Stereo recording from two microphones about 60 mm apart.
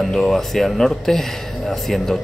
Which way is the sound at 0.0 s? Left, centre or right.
Centre.